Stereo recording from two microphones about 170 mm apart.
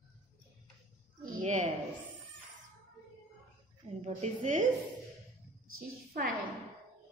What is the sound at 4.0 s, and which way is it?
Speech, 45° right (ahead or behind).